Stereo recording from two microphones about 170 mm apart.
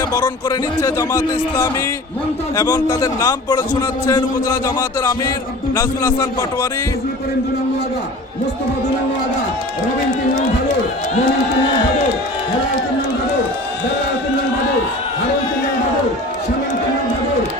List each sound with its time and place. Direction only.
0.1 s a man's voice: 20° left (ahead or behind)